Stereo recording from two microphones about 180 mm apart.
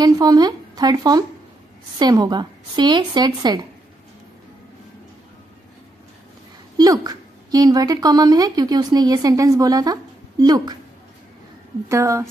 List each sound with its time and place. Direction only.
0.0 s a woman's voice: 20° right (ahead or behind)
6.8 s a woman's voice: 20° right (ahead or behind)
11.9 s a woman's voice: 15° right (ahead or behind)